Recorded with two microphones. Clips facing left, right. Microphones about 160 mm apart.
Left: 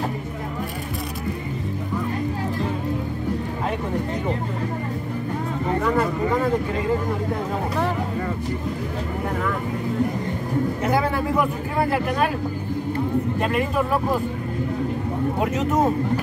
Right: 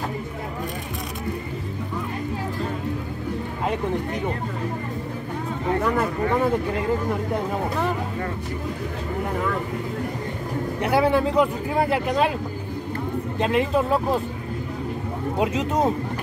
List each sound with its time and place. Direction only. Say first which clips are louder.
10.8 s a sound: right 7 dB; 20° right (ahead or behind)
13.4 s speech: right 6 dB; 25° right (ahead or behind)
15.3 s speech: even; 20° right (ahead or behind)